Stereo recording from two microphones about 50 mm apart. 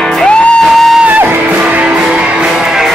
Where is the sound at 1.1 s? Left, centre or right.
Right.